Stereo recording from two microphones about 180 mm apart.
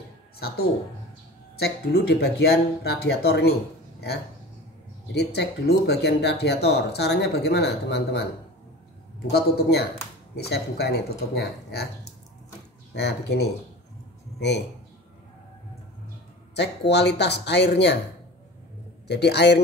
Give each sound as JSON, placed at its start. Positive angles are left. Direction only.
{"t": 0.4, "sound": "speech", "side_deg": 60}
{"t": 5.1, "sound": "speech", "side_deg": 65}
{"t": 9.3, "sound": "speech", "side_deg": 60}
{"t": 12.9, "sound": "speech", "side_deg": 70}
{"t": 16.5, "sound": "speech", "side_deg": 70}
{"t": 19.0, "sound": "speech", "side_deg": 70}